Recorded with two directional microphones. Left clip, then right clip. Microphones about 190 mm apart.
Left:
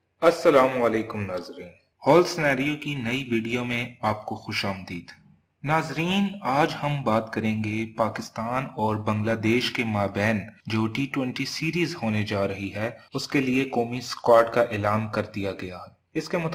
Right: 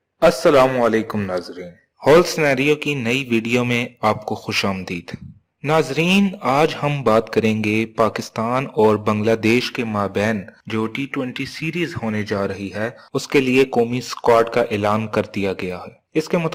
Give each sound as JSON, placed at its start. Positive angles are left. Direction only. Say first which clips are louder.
{"t": 0.2, "sound": "a man's voice", "louder": "right 5 dB", "side_deg": -45}
{"t": 9.6, "sound": "speech", "louder": "right 4 dB", "side_deg": -25}
{"t": 10.7, "sound": "speech", "louder": "right 4 dB", "side_deg": -10}
{"t": 13.5, "sound": "a man's voice", "louder": "right 9 dB", "side_deg": -40}